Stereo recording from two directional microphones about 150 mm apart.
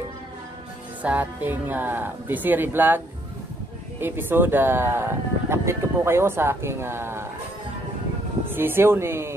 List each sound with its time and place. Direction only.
1.0 s speech: 10° right (ahead or behind)
4.0 s speech: 15° right (ahead or behind)
8.5 s speech: 15° right (ahead or behind)